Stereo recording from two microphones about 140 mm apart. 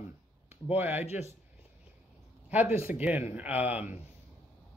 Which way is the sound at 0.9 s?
50° left (ahead or behind).